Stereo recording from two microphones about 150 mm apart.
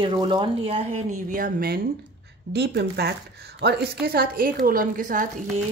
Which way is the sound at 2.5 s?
90° right.